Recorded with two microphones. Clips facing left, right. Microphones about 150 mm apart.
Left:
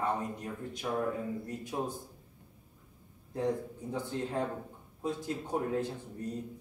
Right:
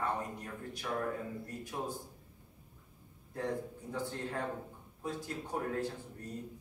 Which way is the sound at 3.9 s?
20° left (ahead or behind).